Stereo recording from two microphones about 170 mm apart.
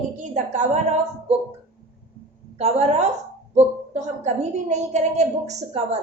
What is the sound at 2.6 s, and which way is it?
Speech, 35° right (ahead or behind).